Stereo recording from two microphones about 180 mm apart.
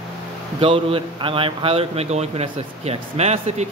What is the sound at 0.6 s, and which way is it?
A man's voice, 30° right (ahead or behind).